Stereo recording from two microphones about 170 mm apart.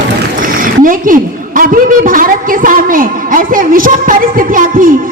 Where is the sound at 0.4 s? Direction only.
55° right (ahead or behind).